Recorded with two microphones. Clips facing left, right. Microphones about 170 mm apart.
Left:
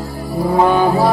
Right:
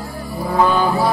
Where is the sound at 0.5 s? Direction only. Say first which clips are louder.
Left 3 dB; 20° left (ahead or behind).